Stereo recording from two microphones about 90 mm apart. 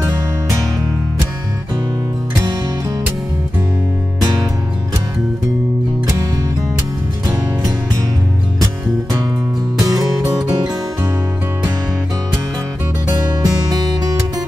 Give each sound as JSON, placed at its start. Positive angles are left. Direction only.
{"t": 9.8, "sound": "music", "side_deg": -45}
{"t": 13.3, "sound": "music", "side_deg": -45}